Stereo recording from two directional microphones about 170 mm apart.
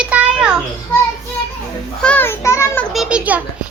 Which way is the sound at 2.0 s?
10° left (ahead or behind).